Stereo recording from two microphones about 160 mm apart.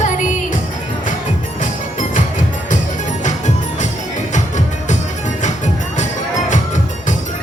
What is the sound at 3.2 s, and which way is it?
Music, 50° left (ahead or behind).